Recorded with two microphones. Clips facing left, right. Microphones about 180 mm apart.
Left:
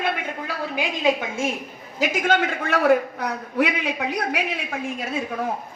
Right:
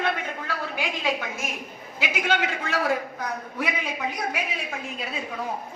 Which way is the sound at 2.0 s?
45° left (ahead or behind).